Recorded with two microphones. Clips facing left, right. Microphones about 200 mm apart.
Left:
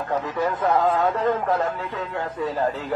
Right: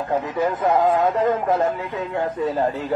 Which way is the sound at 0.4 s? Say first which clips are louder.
Right 2 dB; 15° right (ahead or behind).